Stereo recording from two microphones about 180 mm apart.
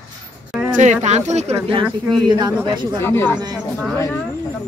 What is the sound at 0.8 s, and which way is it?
Speech, 40° right (ahead or behind).